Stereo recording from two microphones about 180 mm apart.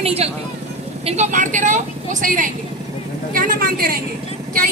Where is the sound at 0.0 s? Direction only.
35° right (ahead or behind).